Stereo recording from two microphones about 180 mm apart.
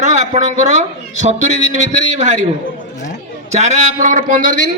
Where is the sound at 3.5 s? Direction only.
40° right (ahead or behind).